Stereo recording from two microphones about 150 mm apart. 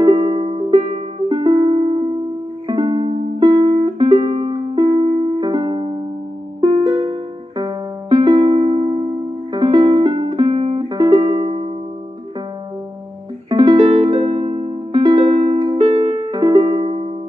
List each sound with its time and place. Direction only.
0.0 s music: 35° right (ahead or behind)
3.3 s music: 30° right (ahead or behind)
13.5 s music: 25° right (ahead or behind)
13.7 s music: 45° right (ahead or behind)